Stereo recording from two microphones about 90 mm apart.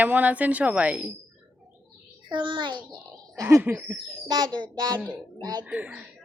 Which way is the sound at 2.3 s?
60° right (ahead or behind).